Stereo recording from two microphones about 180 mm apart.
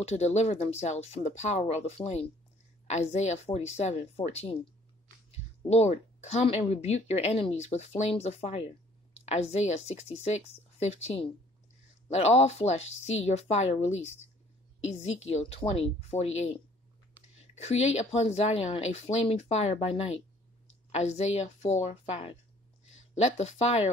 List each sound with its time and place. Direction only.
0.0 s a woman's voice: 40° left (ahead or behind)
5.7 s a woman's voice: 35° left (ahead or behind)